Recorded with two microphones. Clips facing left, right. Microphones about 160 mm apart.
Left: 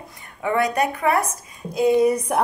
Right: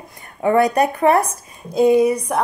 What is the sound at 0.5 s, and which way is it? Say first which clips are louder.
Speech: right 4 dB; 40° right (ahead or behind).